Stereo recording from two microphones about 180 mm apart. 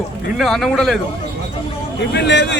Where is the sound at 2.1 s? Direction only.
70° left (ahead or behind).